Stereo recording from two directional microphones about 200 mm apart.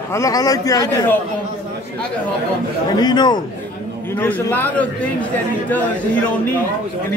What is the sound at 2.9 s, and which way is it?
Speech, 20° left (ahead or behind).